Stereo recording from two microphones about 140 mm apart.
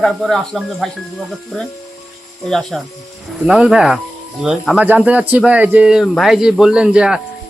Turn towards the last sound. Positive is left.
turn(degrees=-5)  # may be behind; listen again after turning